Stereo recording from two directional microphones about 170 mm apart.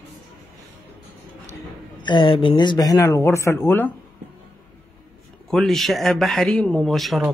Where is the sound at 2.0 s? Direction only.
30° left (ahead or behind); by 3.9 s 15° left (ahead or behind).